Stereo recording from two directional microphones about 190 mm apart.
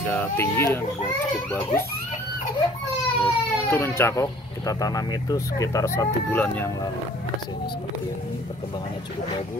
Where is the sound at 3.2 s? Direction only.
10° left (ahead or behind).